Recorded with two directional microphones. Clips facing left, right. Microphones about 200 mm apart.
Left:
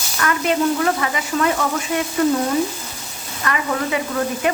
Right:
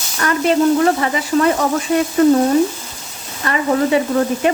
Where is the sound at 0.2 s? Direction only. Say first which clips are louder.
Right 4 dB; 35° right (ahead or behind).